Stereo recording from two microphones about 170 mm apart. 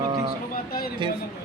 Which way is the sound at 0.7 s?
65° left (ahead or behind).